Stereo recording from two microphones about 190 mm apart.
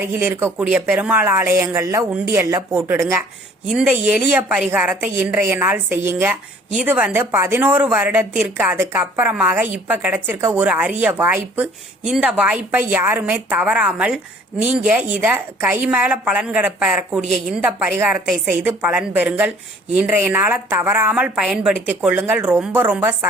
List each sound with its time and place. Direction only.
0.0 s a woman's voice: 10° right (ahead or behind)